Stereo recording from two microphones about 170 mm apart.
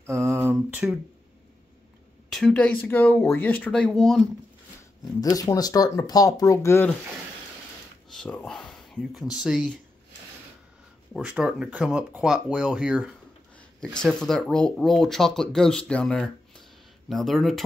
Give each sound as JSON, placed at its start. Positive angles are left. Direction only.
{"t": 0.0, "sound": "a sound", "side_deg": -15}
{"t": 2.2, "sound": "speech", "side_deg": 0}
{"t": 5.0, "sound": "speech", "side_deg": 20}
{"t": 8.1, "sound": "speech", "side_deg": 5}
{"t": 11.1, "sound": "speech", "side_deg": -5}
{"t": 13.6, "sound": "speech", "side_deg": 5}